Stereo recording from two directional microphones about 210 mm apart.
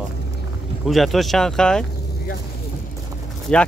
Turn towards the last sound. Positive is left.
turn(degrees=5)  # may be behind; listen again after turning